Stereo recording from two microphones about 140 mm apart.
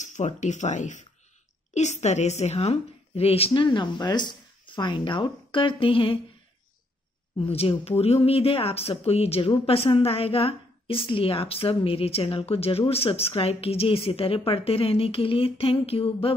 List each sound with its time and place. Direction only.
0.0 s a woman's voice: 60° left (ahead or behind); by 6.1 s 40° left (ahead or behind)
7.3 s speech: 45° left (ahead or behind)